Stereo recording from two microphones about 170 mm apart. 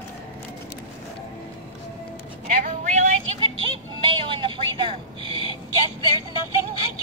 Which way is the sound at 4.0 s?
30° right (ahead or behind).